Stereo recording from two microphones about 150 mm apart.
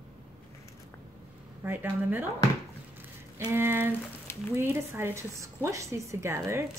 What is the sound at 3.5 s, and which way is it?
A woman's voice, 15° right (ahead or behind).